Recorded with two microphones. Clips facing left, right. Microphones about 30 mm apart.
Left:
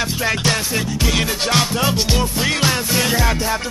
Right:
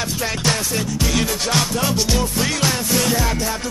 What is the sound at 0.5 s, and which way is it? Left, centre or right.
Music, centre.